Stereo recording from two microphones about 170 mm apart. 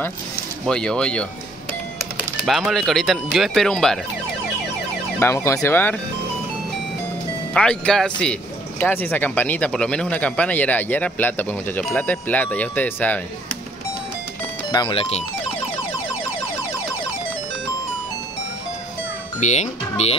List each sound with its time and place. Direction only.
0.7 s speech: 5° left (ahead or behind)
5.2 s speech: 15° left (ahead or behind)
7.5 s speech: 5° left (ahead or behind)
14.7 s speech: 25° left (ahead or behind)
19.4 s speech: 40° left (ahead or behind)